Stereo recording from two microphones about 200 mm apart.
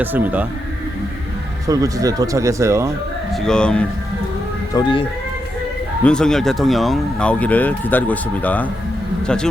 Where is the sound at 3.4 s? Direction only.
5° left (ahead or behind).